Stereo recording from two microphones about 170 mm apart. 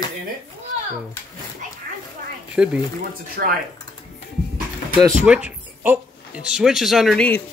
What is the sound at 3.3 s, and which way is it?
Speech, 60° right (ahead or behind).